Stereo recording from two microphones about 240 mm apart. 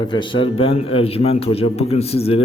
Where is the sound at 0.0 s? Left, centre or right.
Centre.